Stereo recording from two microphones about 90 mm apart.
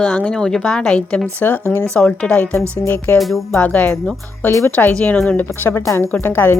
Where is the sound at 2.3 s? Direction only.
25° left (ahead or behind).